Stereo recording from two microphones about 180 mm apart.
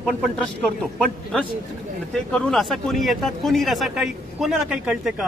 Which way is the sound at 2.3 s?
5° left (ahead or behind).